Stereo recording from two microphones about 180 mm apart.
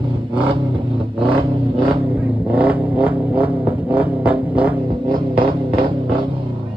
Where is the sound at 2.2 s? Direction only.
10° right (ahead or behind).